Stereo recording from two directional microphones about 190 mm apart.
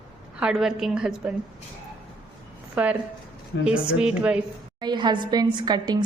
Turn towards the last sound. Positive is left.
turn(degrees=-20)  # may be behind; listen again after turning